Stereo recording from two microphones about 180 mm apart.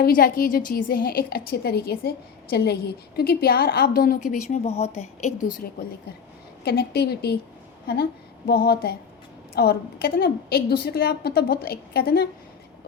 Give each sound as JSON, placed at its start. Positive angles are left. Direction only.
{"t": 0.0, "sound": "a woman's voice", "side_deg": 55}
{"t": 6.7, "sound": "a woman's voice", "side_deg": 60}
{"t": 8.4, "sound": "a woman's voice", "side_deg": 60}